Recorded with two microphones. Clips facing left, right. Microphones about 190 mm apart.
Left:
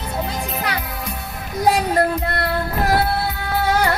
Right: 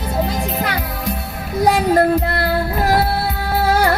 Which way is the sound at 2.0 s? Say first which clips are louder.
Right 4 dB; 30° right (ahead or behind).